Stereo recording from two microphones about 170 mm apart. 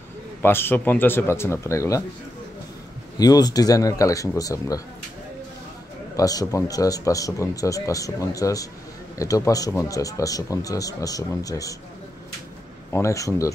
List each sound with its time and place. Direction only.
0.4 s speech: 15° left (ahead or behind)
3.2 s speech: 20° left (ahead or behind)
6.1 s speech: 20° left (ahead or behind)
12.9 s speech: 15° left (ahead or behind)